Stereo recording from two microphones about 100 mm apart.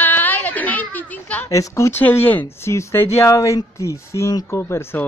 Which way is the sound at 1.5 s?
30° left (ahead or behind).